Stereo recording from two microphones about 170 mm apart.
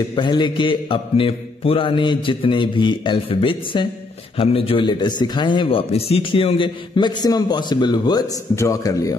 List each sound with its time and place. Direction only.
0.1 s a man's voice: 25° left (ahead or behind)